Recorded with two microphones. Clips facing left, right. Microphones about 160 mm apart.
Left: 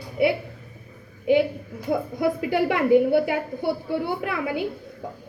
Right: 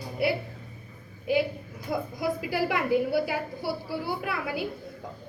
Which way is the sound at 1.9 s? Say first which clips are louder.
Left 6 dB; 55° left (ahead or behind).